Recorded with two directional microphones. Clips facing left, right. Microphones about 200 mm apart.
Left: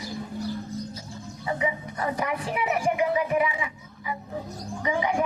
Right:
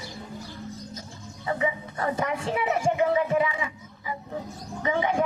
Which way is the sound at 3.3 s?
20° left (ahead or behind).